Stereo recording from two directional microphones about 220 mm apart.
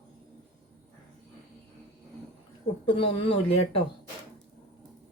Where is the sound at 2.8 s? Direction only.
25° left (ahead or behind).